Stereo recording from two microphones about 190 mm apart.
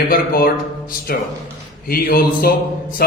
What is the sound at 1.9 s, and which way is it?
Speech, 55° left (ahead or behind).